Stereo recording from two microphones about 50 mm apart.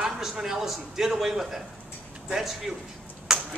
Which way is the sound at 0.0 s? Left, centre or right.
Centre.